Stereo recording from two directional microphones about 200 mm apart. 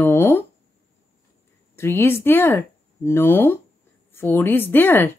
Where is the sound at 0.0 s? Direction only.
10° left (ahead or behind).